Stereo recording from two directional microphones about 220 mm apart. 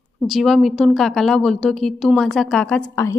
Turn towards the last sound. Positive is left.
turn(degrees=15)  # may be behind; listen again after turning